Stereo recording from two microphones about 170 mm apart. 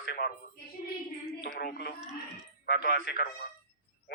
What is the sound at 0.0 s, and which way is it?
Speech, 60° left (ahead or behind).